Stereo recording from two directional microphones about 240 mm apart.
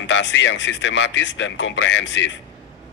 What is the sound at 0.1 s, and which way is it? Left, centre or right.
A man's voice, left.